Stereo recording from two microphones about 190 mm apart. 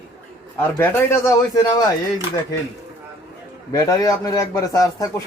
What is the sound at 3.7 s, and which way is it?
A man's voice, 20° left (ahead or behind).